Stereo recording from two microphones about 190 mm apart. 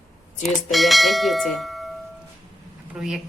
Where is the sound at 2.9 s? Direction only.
5° right (ahead or behind).